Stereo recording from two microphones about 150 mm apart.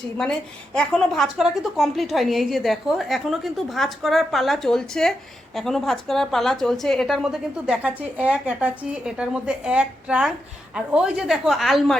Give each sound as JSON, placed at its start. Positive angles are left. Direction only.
{"t": 0.2, "sound": "a woman's voice", "side_deg": 5}